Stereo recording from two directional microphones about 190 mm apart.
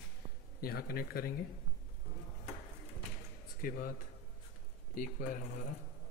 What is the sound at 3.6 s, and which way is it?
Speech, 50° left (ahead or behind).